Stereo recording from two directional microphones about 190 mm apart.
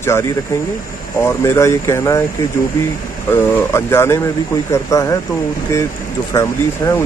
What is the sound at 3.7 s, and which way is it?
Speech, 15° left (ahead or behind).